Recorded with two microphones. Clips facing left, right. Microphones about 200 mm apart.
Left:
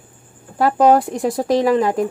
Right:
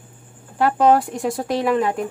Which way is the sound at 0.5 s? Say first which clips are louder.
Left 2 dB; 40° left (ahead or behind).